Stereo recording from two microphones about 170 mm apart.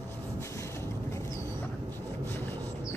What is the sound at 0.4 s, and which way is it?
Vehicle, 15° left (ahead or behind).